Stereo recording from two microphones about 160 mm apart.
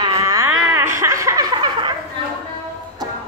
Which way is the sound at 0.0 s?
20° right (ahead or behind).